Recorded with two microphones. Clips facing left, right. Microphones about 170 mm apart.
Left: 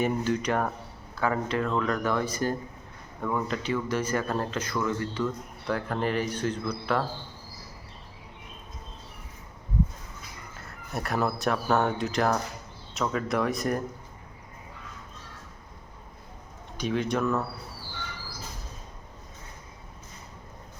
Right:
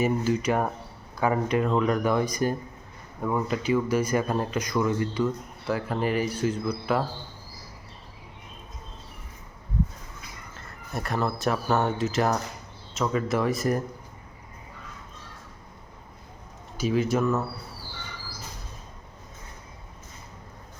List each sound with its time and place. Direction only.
0.0 s speech: 5° right (ahead or behind)
10.9 s speech: centre (ahead or behind)
16.7 s speech: 5° right (ahead or behind)